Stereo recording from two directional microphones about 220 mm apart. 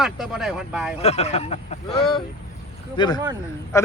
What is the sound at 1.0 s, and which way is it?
Speech, 30° left (ahead or behind).